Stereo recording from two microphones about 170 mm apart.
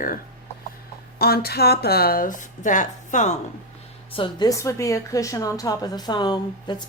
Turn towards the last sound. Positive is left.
turn(degrees=25)  # may be behind; listen again after turning